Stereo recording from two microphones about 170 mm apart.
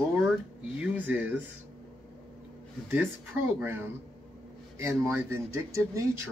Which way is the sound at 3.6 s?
15° right (ahead or behind).